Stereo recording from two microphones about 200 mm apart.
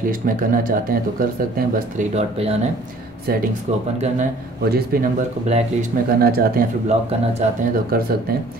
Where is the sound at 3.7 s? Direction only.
35° right (ahead or behind).